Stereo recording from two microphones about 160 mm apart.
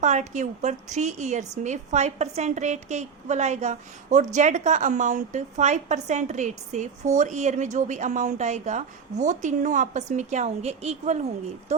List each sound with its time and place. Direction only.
0.0 s a woman's voice: 45° right (ahead or behind)